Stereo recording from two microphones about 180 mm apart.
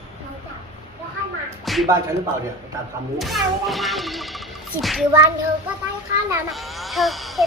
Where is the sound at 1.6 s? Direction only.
Centre (ahead or behind).